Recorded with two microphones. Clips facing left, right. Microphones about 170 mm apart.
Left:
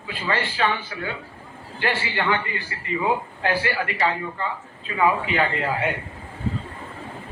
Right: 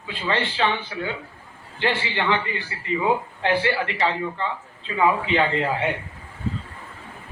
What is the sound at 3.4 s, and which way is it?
A man's voice, 25° right (ahead or behind).